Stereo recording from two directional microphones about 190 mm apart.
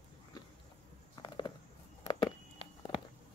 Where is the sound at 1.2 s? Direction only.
25° left (ahead or behind).